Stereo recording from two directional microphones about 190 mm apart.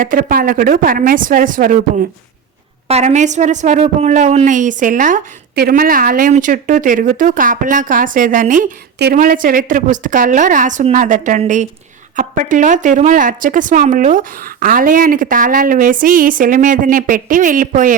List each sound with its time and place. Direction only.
0.0 s a woman's voice: 45° right (ahead or behind)
2.8 s a woman's voice: 35° right (ahead or behind)